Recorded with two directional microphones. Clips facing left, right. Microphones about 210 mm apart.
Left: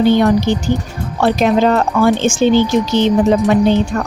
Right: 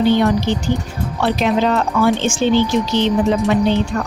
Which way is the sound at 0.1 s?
45° left (ahead or behind).